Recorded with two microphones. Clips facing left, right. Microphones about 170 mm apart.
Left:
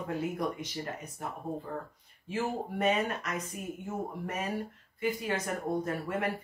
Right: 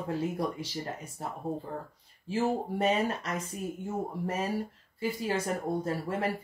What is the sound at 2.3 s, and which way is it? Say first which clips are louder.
Speech: right 4 dB; 30° right (ahead or behind).